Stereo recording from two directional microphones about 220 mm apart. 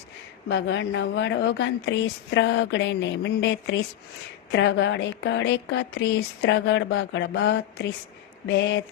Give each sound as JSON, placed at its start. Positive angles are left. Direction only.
{"t": 0.4, "sound": "speech", "side_deg": 55}